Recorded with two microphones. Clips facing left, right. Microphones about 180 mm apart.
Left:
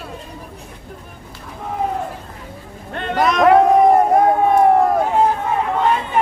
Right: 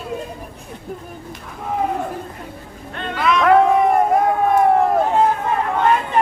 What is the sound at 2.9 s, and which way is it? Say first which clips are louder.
Boat: left 2 dB; 40° left (ahead or behind).